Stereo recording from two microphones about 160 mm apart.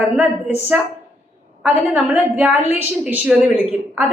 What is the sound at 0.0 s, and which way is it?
A woman's voice, 10° right (ahead or behind).